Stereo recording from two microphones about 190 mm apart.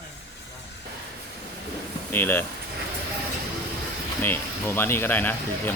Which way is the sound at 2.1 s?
10° left (ahead or behind).